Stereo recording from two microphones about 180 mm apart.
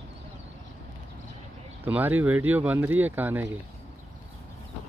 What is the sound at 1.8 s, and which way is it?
Speech, 10° right (ahead or behind).